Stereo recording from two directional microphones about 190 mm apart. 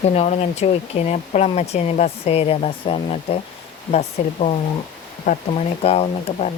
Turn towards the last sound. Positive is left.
turn(degrees=35)  # may be behind; listen again after turning